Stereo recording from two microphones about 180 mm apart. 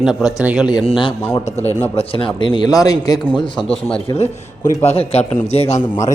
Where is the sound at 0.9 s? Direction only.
25° left (ahead or behind).